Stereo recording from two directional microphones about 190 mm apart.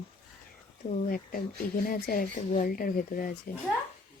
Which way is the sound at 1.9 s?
50° left (ahead or behind).